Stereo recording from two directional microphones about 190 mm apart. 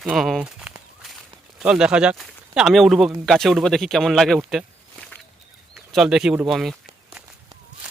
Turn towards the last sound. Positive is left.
turn(degrees=0)  # may be behind; listen again after turning